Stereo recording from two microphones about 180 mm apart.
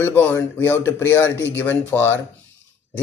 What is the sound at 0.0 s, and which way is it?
Speech, 10° left (ahead or behind).